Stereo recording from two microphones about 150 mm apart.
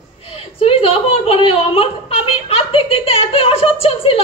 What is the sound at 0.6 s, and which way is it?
A woman's voice, 40° left (ahead or behind).